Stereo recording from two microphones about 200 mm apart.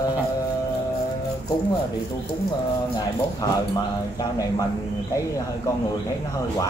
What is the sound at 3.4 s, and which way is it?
Speech, 20° left (ahead or behind).